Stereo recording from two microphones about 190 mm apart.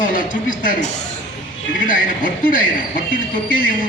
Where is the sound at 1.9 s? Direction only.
45° left (ahead or behind).